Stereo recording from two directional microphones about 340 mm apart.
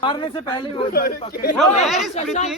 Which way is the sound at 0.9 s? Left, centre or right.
Left.